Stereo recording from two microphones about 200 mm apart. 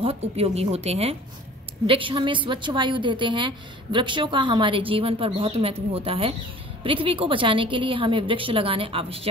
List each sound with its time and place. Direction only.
0.0 s a woman's voice: 30° right (ahead or behind)